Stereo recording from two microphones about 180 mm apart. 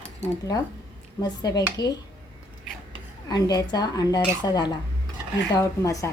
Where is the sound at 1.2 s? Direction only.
20° left (ahead or behind).